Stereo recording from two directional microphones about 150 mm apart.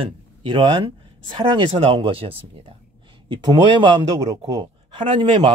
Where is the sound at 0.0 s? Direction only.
35° right (ahead or behind).